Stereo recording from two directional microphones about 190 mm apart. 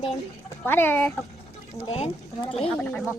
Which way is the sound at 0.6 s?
10° left (ahead or behind).